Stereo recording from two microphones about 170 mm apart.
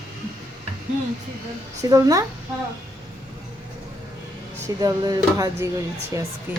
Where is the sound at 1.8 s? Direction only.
20° right (ahead or behind).